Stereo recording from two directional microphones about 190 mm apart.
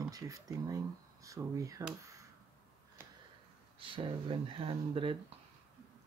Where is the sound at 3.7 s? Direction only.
30° right (ahead or behind).